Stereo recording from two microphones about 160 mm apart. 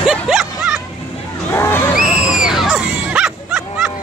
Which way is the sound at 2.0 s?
5° right (ahead or behind).